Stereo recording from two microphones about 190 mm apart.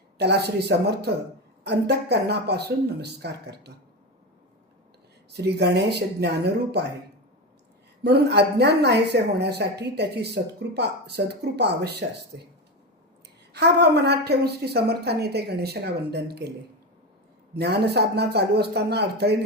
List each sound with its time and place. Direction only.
0.2 s a woman's voice: 60° right (ahead or behind)
5.3 s a woman's voice: 60° right (ahead or behind)
8.0 s a woman's voice: 60° right (ahead or behind)
13.5 s a woman's voice: 60° right (ahead or behind)
17.5 s a woman's voice: 60° right (ahead or behind)